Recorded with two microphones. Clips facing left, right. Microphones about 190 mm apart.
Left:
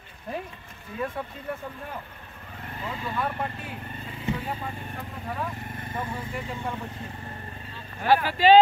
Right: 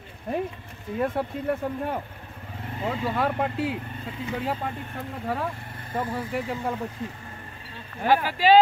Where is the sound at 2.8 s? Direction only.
85° right.